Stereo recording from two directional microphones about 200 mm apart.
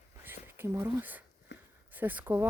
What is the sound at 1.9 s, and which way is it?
Speech, 10° right (ahead or behind).